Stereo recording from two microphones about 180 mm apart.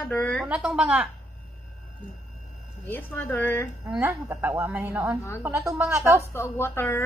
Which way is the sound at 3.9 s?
10° right (ahead or behind).